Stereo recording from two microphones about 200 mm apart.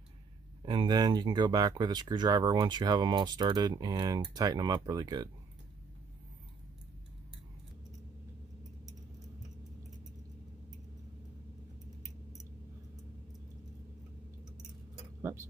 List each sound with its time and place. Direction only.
0.6 s speech: 25° right (ahead or behind)